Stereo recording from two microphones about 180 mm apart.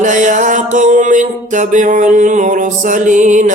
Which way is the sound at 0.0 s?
45° right (ahead or behind).